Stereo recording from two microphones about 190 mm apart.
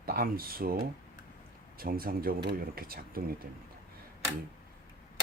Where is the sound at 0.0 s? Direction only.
50° right (ahead or behind).